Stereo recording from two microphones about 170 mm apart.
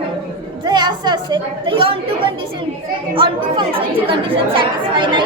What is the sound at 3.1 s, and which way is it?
A woman's voice, 30° right (ahead or behind).